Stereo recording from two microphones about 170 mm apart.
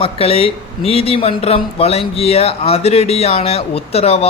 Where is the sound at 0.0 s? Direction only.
35° left (ahead or behind).